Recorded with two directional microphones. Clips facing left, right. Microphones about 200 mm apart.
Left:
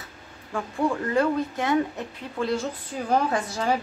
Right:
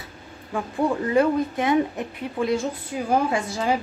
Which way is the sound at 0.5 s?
15° right (ahead or behind).